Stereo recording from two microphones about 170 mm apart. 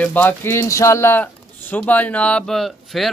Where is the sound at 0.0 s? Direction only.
10° left (ahead or behind).